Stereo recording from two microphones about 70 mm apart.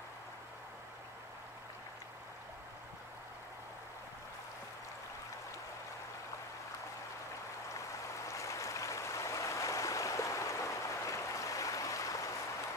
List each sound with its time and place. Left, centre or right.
8.3 s stream: left